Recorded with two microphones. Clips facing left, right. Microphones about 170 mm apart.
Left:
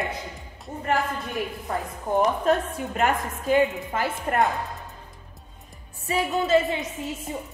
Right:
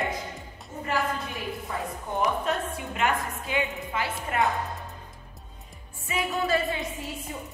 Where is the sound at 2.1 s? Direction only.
40° left (ahead or behind).